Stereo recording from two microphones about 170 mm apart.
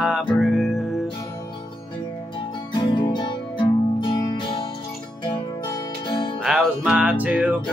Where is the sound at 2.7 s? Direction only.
25° left (ahead or behind).